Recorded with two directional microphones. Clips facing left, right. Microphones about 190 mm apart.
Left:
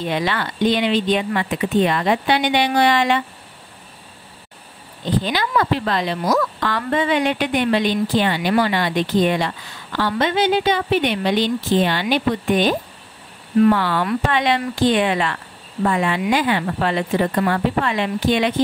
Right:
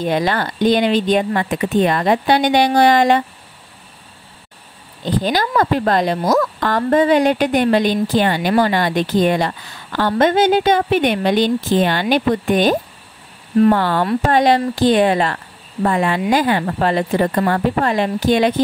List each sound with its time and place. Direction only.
0.0 s a woman's voice: 45° right (ahead or behind)
5.2 s a woman's voice: 40° right (ahead or behind)